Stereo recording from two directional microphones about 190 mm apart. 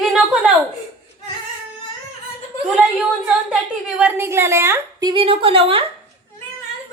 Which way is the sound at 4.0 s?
10° right (ahead or behind).